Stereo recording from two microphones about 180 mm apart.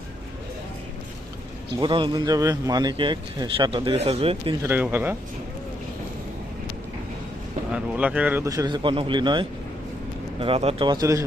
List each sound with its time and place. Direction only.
1.8 s speech: 25° right (ahead or behind)
4.6 s speech: 10° right (ahead or behind)
7.7 s speech: 5° right (ahead or behind)